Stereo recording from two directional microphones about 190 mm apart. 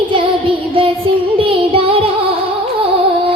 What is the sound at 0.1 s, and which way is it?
Child singing, 30° right (ahead or behind).